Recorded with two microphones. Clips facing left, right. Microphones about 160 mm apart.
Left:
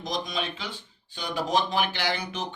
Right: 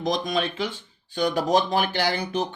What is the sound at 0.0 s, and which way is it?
Speech, 50° right (ahead or behind).